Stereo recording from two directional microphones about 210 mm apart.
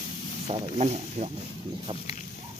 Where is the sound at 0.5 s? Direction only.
30° right (ahead or behind).